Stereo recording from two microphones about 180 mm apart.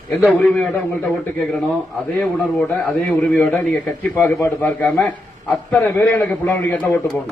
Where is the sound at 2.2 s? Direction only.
5° left (ahead or behind).